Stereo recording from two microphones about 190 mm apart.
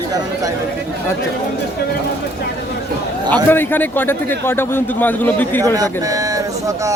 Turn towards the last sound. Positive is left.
turn(degrees=-15)  # may be behind; listen again after turning